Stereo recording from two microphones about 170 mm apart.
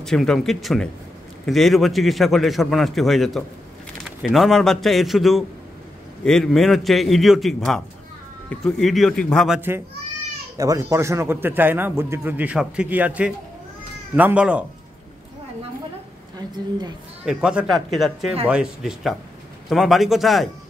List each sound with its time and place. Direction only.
0.0 s a man's voice: centre (ahead or behind)
10.6 s a man's voice: 20° right (ahead or behind)
16.3 s a woman's voice: 25° right (ahead or behind)
17.2 s a man's voice: 5° right (ahead or behind)